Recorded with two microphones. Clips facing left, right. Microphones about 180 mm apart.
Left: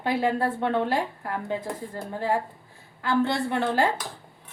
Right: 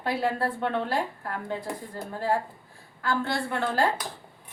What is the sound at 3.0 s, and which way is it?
Speech, 20° left (ahead or behind).